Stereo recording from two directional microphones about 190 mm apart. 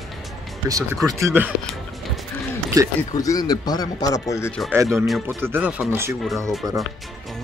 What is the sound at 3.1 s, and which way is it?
Speech, 20° left (ahead or behind).